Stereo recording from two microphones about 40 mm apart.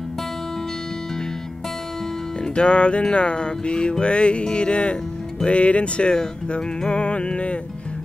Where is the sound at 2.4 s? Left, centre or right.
Left.